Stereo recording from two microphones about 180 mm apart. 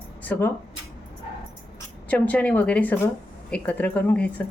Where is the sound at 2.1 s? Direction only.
10° left (ahead or behind).